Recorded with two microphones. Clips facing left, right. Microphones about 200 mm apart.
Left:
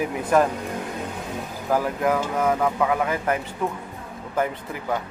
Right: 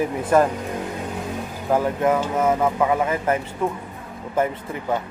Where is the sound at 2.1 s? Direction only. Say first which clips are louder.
Right 1 dB; 5° right (ahead or behind).